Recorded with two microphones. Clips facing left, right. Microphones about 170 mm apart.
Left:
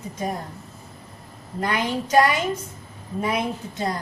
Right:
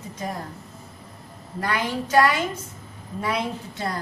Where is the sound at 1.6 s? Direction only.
20° left (ahead or behind).